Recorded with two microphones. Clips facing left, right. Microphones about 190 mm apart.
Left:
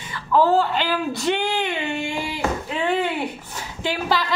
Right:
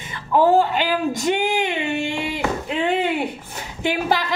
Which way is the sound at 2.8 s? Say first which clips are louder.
Right 1 dB; 20° right (ahead or behind).